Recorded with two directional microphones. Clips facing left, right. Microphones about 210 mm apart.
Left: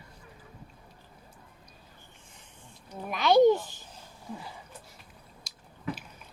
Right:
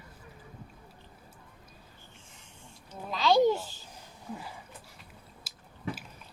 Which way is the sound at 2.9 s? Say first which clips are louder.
Left 2 dB; 20° left (ahead or behind).